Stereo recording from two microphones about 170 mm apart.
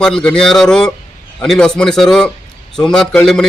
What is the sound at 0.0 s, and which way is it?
A man's voice, 5° left (ahead or behind).